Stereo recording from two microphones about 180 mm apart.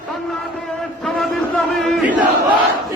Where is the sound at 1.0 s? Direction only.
Centre (ahead or behind).